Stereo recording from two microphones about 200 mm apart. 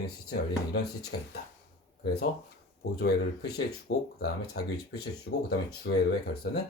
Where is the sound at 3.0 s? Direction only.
55° left (ahead or behind).